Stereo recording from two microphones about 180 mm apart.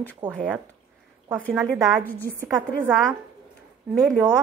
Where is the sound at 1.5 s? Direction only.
Centre (ahead or behind).